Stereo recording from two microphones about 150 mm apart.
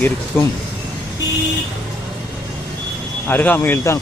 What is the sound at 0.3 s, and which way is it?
Speech, 15° left (ahead or behind).